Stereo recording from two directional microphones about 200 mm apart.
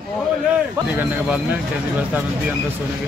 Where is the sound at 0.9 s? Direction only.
5° right (ahead or behind).